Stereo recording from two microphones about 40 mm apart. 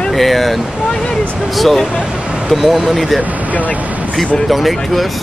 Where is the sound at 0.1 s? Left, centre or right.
Centre.